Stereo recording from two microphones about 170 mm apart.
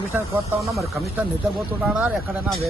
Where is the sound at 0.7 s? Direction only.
Centre (ahead or behind).